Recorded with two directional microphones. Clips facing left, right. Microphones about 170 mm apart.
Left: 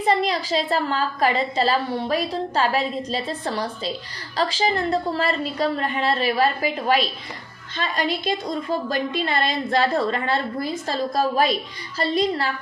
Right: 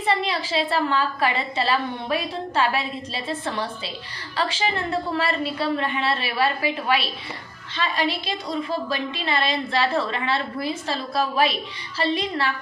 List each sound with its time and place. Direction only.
0.1 s a woman's voice: 40° left (ahead or behind)